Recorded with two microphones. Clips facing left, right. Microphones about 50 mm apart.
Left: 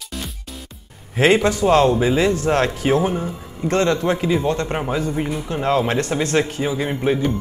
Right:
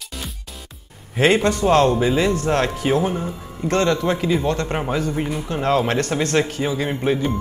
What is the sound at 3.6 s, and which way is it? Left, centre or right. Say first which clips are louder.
Speech: left 1 dB; left.